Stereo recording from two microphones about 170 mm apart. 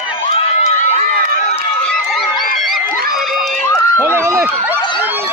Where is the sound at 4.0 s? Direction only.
15° right (ahead or behind).